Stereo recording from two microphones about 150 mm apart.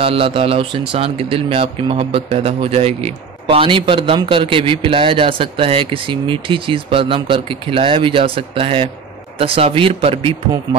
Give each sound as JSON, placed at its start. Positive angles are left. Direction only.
{"t": 0.0, "sound": "speech", "side_deg": -40}